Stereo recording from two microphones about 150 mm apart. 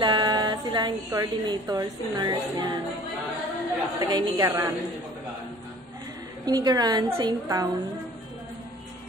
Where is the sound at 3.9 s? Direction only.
25° right (ahead or behind).